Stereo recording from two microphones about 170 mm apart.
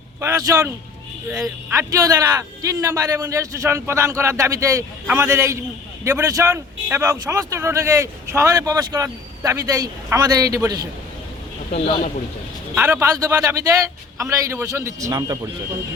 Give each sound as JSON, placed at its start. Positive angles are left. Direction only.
{"t": 0.2, "sound": "a man's voice", "side_deg": -15}
{"t": 1.7, "sound": "a man's voice", "side_deg": -15}
{"t": 11.7, "sound": "a man's voice", "side_deg": 40}
{"t": 12.7, "sound": "a man's voice", "side_deg": -10}